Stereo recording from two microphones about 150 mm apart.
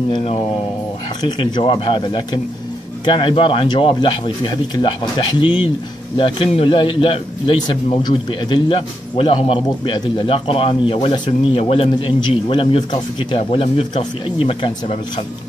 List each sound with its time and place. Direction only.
0.1 s a man's voice: 45° left (ahead or behind)